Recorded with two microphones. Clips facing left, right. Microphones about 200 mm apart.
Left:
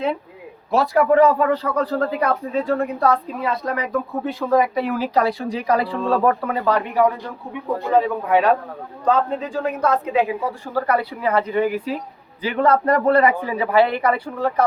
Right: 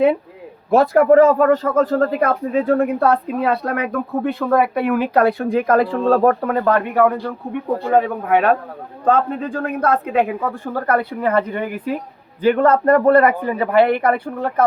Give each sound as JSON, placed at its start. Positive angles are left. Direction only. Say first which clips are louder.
{"t": 0.7, "sound": "speech", "louder": "right 5 dB", "side_deg": -50}